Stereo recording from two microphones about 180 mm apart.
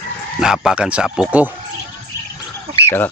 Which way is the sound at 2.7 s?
15° left (ahead or behind).